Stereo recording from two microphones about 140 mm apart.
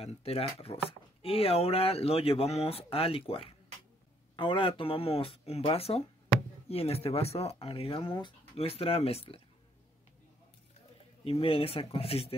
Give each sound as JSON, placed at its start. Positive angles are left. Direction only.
{"t": 0.0, "sound": "speech", "side_deg": 45}
{"t": 11.2, "sound": "speech", "side_deg": 45}